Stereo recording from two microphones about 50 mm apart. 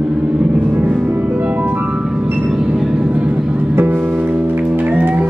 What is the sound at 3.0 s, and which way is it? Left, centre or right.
Vehicle, right.